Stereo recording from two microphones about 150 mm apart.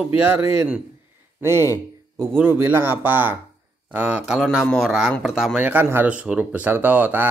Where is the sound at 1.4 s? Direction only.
15° right (ahead or behind).